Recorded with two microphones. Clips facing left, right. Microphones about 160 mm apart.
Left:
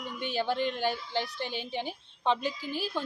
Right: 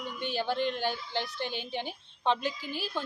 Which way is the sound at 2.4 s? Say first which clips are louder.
Left 2 dB; 40° left (ahead or behind).